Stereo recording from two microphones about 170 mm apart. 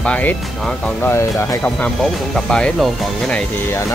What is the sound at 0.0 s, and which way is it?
Speech, 10° left (ahead or behind).